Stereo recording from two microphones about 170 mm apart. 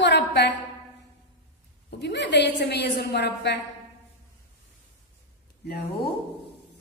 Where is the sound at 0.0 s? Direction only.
85° left.